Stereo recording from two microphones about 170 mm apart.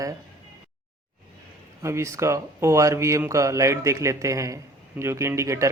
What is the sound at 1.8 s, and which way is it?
A man's voice, 15° right (ahead or behind).